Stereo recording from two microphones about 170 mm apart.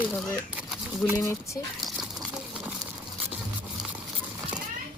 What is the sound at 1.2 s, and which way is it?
Speech, 15° left (ahead or behind).